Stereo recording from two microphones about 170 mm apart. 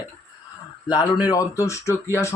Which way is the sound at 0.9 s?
25° left (ahead or behind).